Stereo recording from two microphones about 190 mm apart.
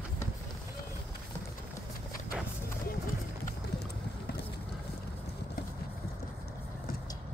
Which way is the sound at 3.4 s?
60° left (ahead or behind).